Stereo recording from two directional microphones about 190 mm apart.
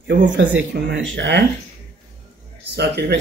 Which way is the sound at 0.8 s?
70° right (ahead or behind).